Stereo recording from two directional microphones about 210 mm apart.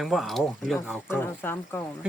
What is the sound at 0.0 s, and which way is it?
Speech, centre (ahead or behind).